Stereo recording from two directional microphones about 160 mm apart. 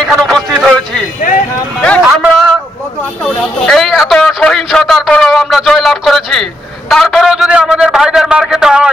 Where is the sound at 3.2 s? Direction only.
Centre (ahead or behind).